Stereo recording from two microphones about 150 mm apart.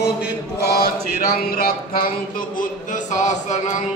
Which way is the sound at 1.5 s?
90° left.